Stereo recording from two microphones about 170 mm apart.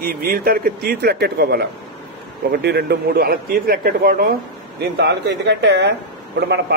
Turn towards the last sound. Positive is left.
turn(degrees=-85)